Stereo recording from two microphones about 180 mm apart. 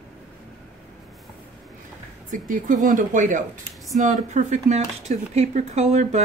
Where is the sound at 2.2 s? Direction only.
45° right (ahead or behind).